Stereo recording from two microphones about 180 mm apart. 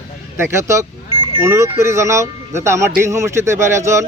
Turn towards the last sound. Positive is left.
turn(degrees=-15)  # may be behind; listen again after turning